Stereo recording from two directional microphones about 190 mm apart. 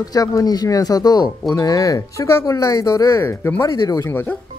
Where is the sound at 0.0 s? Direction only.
20° left (ahead or behind).